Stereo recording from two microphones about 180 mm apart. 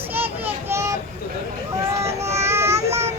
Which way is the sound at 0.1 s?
10° right (ahead or behind).